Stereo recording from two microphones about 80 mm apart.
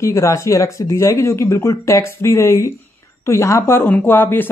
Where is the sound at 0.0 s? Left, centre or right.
Left.